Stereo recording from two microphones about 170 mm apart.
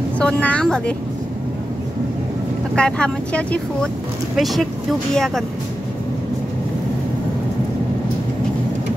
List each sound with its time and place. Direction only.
0.2 s a woman's voice: 5° left (ahead or behind)
2.7 s speech: 5° left (ahead or behind)